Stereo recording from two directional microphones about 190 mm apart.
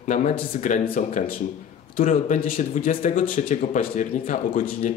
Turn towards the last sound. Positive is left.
turn(degrees=45)  # may be behind; listen again after turning